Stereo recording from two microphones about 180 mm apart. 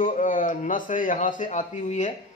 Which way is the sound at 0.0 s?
45° left (ahead or behind).